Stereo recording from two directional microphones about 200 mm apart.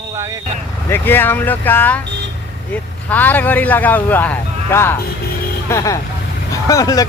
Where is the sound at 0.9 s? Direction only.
10° left (ahead or behind).